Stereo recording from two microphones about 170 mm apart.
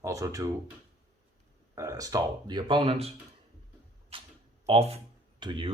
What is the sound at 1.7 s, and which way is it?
Speech, 20° right (ahead or behind).